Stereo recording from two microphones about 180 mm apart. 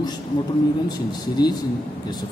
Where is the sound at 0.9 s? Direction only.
20° left (ahead or behind).